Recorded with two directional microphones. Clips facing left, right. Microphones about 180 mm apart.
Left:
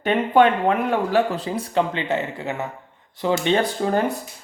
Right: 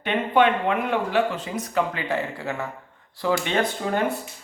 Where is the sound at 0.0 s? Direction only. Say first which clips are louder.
Left 3 dB; 40° left (ahead or behind).